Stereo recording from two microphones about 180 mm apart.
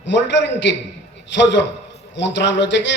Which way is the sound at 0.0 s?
80° left.